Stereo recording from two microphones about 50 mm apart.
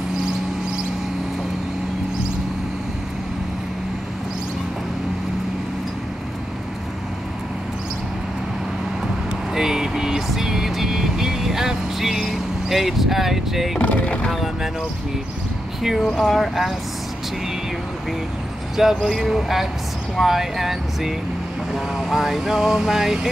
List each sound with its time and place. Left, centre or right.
9.0 s vehicle: centre
13.7 s boat: left
14.3 s speech: centre
15.8 s vehicle: centre
16.2 s speech: centre
18.8 s vehicle: centre